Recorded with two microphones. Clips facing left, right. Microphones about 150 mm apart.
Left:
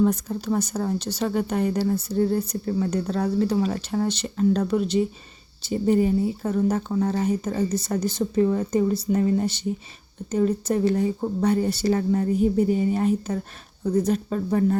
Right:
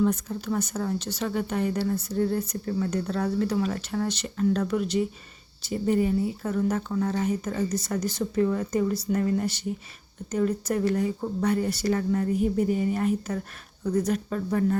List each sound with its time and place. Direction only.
0.0 s speech: 40° left (ahead or behind)